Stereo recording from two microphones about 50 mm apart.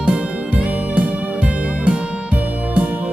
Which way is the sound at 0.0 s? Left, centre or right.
Right.